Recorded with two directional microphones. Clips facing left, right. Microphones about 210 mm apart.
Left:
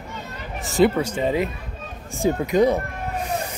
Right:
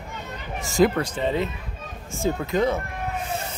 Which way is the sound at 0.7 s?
5° left (ahead or behind).